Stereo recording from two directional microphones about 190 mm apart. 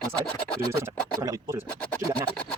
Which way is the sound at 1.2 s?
15° right (ahead or behind).